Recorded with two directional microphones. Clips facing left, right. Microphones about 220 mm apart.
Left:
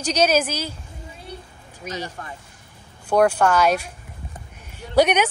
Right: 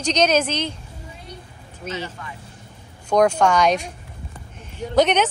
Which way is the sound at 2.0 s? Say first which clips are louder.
Even; 40° left (ahead or behind).